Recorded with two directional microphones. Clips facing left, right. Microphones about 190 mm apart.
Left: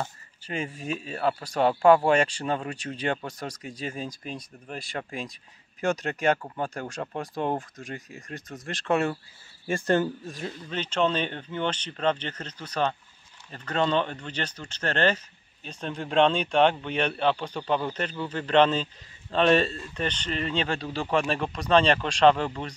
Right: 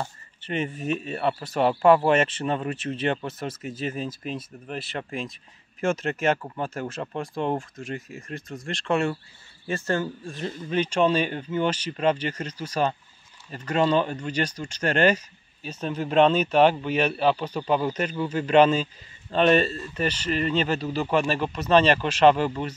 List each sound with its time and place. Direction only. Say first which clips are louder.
1.1 s speech: left 3 dB; 5° right (ahead or behind)
9.7 s speech: left 2 dB; 15° left (ahead or behind)
10.7 s speech: right 4 dB; 10° right (ahead or behind)